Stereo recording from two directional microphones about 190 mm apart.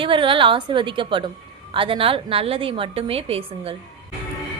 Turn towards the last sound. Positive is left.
turn(degrees=-30)  # may be behind; listen again after turning